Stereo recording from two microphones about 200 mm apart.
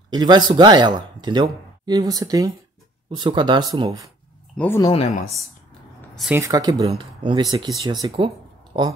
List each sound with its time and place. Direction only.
0.1 s speech: 20° right (ahead or behind)
4.6 s speech: 15° left (ahead or behind)
4.9 s speech: 35° left (ahead or behind)
5.9 s a sound: centre (ahead or behind)
6.3 s speech: 15° right (ahead or behind)